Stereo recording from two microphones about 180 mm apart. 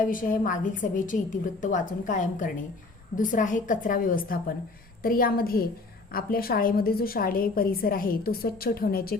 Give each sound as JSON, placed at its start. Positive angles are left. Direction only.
{"t": 0.0, "sound": "a woman's voice", "side_deg": 45}